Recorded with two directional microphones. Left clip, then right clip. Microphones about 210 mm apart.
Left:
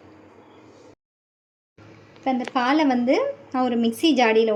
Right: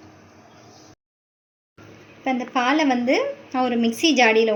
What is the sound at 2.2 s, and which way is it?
Speech, 5° left (ahead or behind).